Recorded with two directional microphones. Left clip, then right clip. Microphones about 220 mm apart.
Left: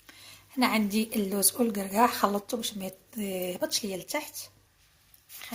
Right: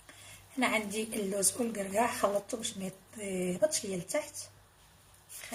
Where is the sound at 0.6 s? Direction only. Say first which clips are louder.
Left 4 dB; 45° left (ahead or behind).